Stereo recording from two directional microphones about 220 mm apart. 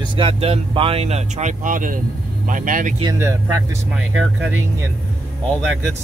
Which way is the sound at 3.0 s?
15° right (ahead or behind).